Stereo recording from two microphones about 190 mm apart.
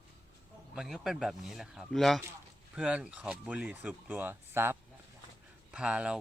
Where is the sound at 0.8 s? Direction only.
5° right (ahead or behind).